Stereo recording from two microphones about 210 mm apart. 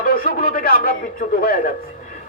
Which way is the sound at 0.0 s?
45° left (ahead or behind).